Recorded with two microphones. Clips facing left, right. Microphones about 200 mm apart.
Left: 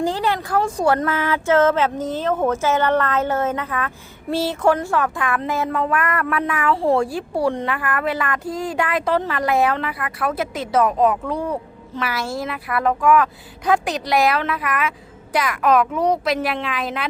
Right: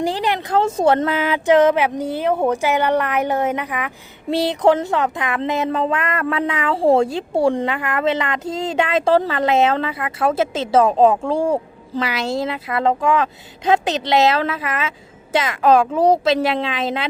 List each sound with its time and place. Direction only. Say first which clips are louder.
0.0 s speech: right 1 dB; 15° right (ahead or behind)